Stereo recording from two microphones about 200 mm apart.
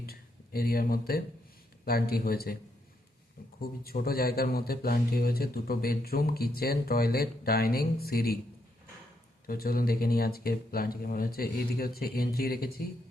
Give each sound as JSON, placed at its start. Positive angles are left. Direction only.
{"t": 0.0, "sound": "a sound", "side_deg": 50}
{"t": 1.8, "sound": "speech", "side_deg": 50}
{"t": 3.6, "sound": "speech", "side_deg": 50}
{"t": 9.5, "sound": "speech", "side_deg": 50}